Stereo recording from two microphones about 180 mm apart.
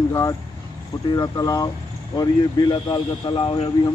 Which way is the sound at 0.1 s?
20° left (ahead or behind).